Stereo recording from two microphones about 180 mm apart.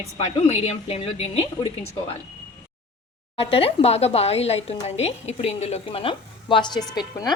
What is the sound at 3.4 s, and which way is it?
A woman's voice, 30° left (ahead or behind).